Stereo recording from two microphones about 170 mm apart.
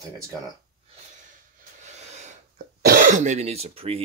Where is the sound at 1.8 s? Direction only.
40° right (ahead or behind).